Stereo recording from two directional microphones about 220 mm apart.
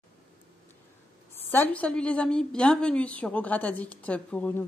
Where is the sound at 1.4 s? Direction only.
10° left (ahead or behind).